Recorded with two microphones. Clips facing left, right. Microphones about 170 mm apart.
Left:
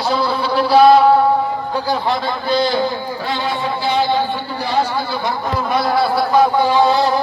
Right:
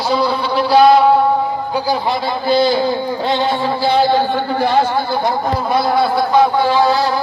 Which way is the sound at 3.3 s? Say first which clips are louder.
Right 4 dB; 25° right (ahead or behind).